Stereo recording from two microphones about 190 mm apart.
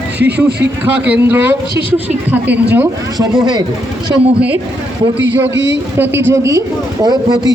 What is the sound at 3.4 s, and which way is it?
Speech, 20° right (ahead or behind).